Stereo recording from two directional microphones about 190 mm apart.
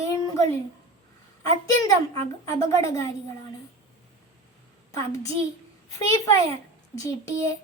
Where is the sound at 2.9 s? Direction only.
15° left (ahead or behind).